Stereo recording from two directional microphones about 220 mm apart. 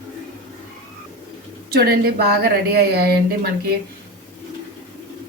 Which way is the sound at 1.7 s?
45° right (ahead or behind).